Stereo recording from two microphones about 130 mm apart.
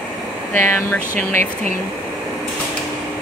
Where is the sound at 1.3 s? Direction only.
70° right (ahead or behind).